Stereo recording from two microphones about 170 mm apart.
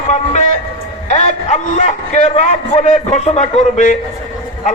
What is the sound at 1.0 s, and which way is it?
A man's voice, 45° left (ahead or behind).